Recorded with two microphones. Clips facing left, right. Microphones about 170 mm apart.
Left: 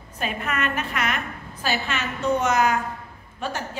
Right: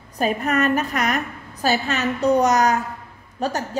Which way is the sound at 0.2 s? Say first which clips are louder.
Right 7 dB; 40° right (ahead or behind).